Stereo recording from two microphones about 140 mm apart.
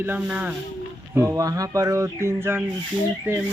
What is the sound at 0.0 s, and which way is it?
Speech, 15° right (ahead or behind).